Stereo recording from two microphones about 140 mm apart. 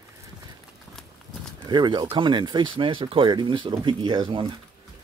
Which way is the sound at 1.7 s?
30° right (ahead or behind).